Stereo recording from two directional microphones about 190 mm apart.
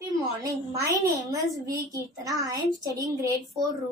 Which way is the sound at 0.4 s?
15° right (ahead or behind).